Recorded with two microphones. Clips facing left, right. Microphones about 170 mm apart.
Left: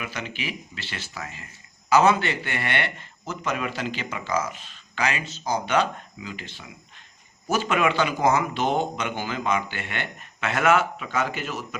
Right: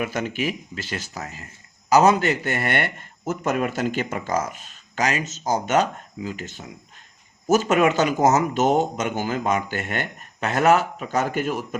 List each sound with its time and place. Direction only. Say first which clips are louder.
0.0 s a man's voice: right 8 dB; 45° right (ahead or behind)